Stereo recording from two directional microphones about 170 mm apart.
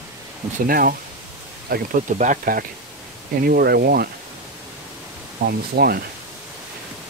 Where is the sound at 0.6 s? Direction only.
60° right (ahead or behind).